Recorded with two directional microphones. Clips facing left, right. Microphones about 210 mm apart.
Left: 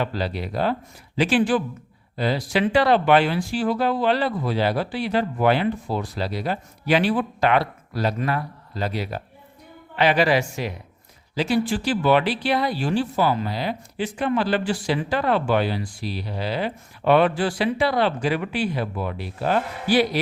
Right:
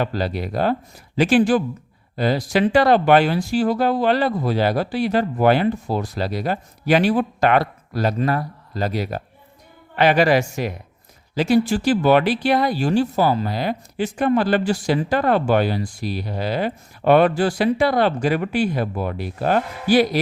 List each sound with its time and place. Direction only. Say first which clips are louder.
0.0 s speech: right 3 dB; 45° right (ahead or behind)